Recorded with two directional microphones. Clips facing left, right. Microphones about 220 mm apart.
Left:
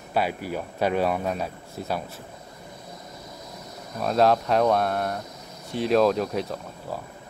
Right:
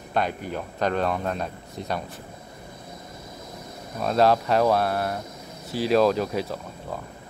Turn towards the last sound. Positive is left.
turn(degrees=0)  # may be behind; listen again after turning